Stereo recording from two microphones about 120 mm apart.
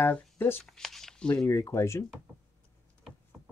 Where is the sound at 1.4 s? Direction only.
20° left (ahead or behind).